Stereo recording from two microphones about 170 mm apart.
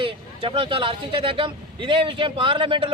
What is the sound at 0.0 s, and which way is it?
Speech, 30° right (ahead or behind).